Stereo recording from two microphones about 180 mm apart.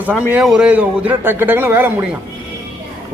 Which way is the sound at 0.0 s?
10° right (ahead or behind).